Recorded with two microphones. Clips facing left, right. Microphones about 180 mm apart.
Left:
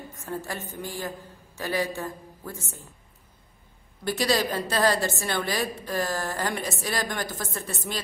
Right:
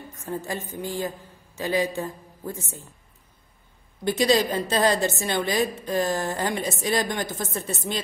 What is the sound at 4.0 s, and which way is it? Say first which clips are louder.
A woman's voice: right 4 dB; 20° right (ahead or behind).